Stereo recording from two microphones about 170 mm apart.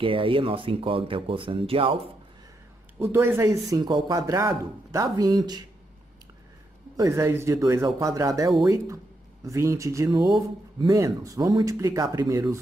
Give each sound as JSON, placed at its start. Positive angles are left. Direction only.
{"t": 0.0, "sound": "speech", "side_deg": -30}
{"t": 3.0, "sound": "speech", "side_deg": -15}
{"t": 7.0, "sound": "speech", "side_deg": -15}